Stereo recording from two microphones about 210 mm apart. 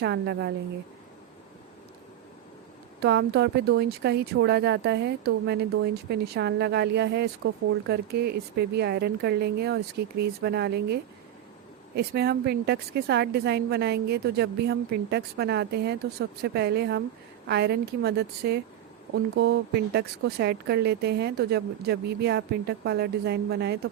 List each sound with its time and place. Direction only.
0.0 s speech: 55° right (ahead or behind)
3.0 s speech: 50° right (ahead or behind)